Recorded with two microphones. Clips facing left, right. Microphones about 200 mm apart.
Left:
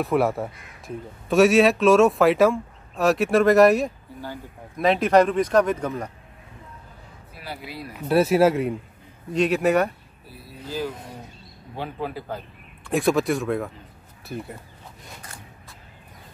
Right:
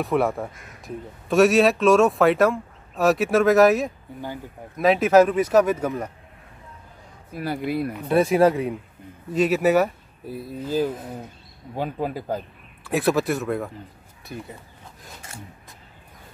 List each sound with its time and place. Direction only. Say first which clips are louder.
0.0 s speech: left 1 dB; centre (ahead or behind)
7.3 s speech: right 11 dB; 50° right (ahead or behind)
7.9 s speech: left 2 dB; centre (ahead or behind)
10.2 s speech: right 9 dB; 45° right (ahead or behind)
12.8 s speech: even; centre (ahead or behind)